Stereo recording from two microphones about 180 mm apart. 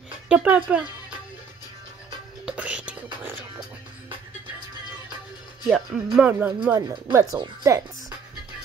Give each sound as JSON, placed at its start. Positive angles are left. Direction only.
{"t": 0.3, "sound": "speech", "side_deg": -10}
{"t": 2.4, "sound": "music", "side_deg": -5}
{"t": 5.7, "sound": "speech", "side_deg": -5}